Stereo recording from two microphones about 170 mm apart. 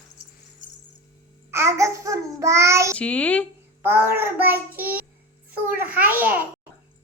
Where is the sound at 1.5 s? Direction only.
15° right (ahead or behind).